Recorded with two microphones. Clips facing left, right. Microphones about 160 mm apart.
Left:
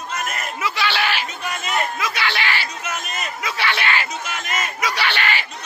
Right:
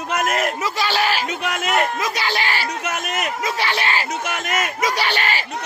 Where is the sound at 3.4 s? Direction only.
40° right (ahead or behind).